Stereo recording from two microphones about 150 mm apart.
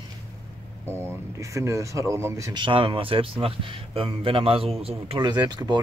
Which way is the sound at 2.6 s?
35° right (ahead or behind).